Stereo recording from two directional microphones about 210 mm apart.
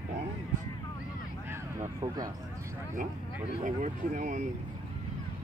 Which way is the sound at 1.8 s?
15° right (ahead or behind).